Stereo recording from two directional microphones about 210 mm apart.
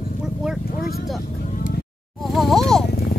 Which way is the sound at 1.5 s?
45° left (ahead or behind).